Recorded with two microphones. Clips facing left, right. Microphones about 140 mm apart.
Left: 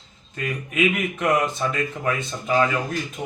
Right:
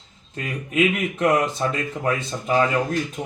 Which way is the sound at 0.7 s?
30° right (ahead or behind).